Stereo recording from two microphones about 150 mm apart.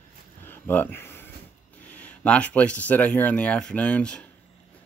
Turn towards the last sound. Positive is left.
turn(degrees=5)  # may be behind; listen again after turning